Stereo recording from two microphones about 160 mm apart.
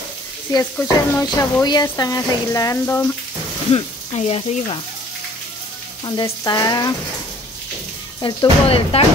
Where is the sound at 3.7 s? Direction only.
40° left (ahead or behind).